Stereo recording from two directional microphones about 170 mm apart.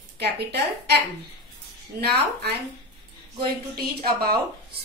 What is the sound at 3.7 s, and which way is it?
Speech, 65° right (ahead or behind).